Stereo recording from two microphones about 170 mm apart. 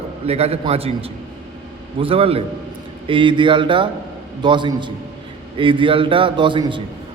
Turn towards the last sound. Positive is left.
turn(degrees=-30)  # may be behind; listen again after turning